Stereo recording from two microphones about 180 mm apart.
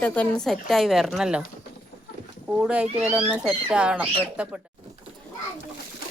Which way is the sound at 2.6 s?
5° right (ahead or behind).